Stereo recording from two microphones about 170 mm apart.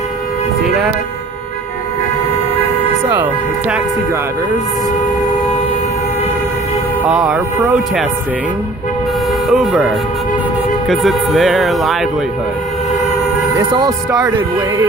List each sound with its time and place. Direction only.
0.7 s a sound: 5° right (ahead or behind)
3.1 s speech: 10° right (ahead or behind)
7.1 s speech: 5° right (ahead or behind)
9.5 s speech: centre (ahead or behind)
13.6 s speech: 25° right (ahead or behind)